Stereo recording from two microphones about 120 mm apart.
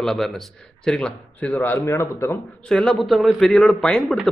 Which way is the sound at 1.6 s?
25° left (ahead or behind).